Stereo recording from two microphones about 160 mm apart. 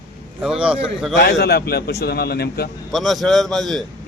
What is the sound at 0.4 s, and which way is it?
Speech, 5° right (ahead or behind).